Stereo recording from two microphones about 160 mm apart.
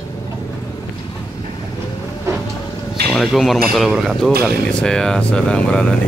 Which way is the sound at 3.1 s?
Centre (ahead or behind).